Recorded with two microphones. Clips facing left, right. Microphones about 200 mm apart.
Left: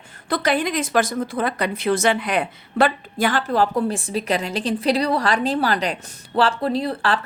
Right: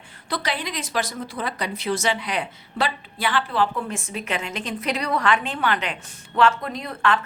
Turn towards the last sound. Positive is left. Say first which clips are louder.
# left 3 dB
turn(degrees=35)  # may be behind; listen again after turning